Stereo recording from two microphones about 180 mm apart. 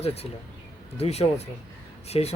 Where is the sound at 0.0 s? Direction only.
35° left (ahead or behind).